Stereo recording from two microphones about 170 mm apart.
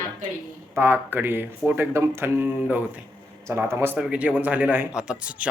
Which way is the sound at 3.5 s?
15° right (ahead or behind).